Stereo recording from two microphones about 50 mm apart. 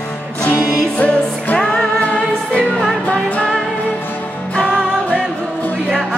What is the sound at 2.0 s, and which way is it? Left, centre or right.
Music, left.